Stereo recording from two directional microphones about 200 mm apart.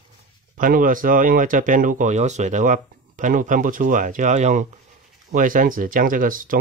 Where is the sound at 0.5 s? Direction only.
45° right (ahead or behind).